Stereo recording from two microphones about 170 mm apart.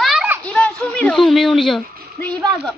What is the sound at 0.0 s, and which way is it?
Children playing, 5° right (ahead or behind).